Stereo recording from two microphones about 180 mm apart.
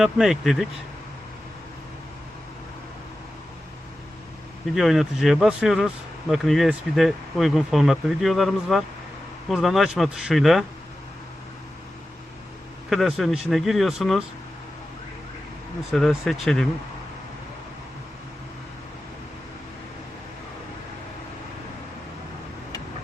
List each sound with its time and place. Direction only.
0.0 s speech: centre (ahead or behind)
4.7 s speech: centre (ahead or behind)
12.9 s speech: centre (ahead or behind)
15.9 s speech: centre (ahead or behind)